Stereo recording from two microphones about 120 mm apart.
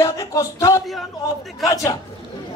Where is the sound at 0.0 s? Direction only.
25° left (ahead or behind).